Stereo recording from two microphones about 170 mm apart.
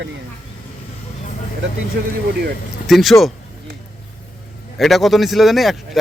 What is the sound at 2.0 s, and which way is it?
Speech, 75° right (ahead or behind).